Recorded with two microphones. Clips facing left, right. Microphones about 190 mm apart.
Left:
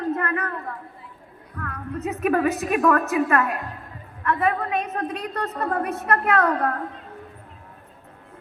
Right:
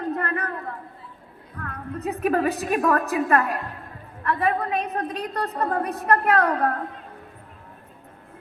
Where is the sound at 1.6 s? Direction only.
35° right (ahead or behind).